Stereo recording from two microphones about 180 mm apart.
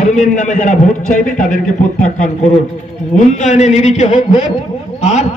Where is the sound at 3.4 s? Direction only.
40° left (ahead or behind).